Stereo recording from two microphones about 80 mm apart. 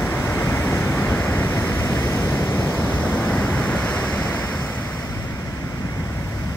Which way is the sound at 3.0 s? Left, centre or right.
Centre.